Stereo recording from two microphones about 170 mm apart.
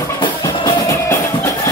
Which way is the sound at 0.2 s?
20° left (ahead or behind).